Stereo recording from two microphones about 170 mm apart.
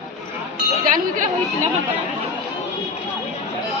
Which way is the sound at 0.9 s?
50° right (ahead or behind).